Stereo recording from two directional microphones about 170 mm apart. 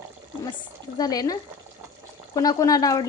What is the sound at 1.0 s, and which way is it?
Speech, 20° left (ahead or behind).